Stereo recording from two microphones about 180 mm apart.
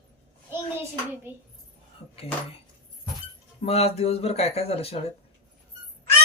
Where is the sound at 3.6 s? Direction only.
35° left (ahead or behind).